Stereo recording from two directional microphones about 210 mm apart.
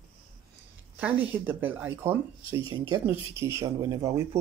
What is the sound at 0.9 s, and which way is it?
Speech, 10° right (ahead or behind).